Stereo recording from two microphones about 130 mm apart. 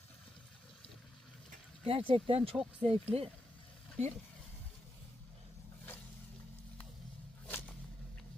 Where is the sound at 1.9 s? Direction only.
45° right (ahead or behind).